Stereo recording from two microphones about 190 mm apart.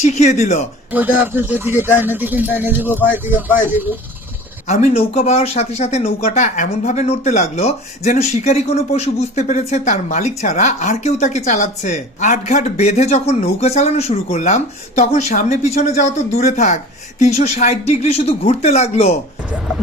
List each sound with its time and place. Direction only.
0.0 s speech: 35° left (ahead or behind)
0.9 s speech: 10° right (ahead or behind)
4.6 s speech: 35° left (ahead or behind)